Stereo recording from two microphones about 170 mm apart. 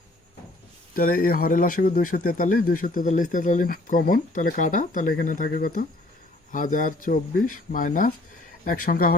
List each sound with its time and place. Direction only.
0.9 s speech: 55° left (ahead or behind)